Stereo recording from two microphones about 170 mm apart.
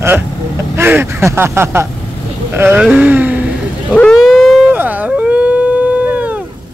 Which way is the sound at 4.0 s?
5° left (ahead or behind).